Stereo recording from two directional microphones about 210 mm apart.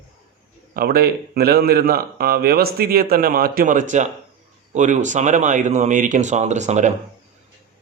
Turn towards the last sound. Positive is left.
turn(degrees=-35)  # may be behind; listen again after turning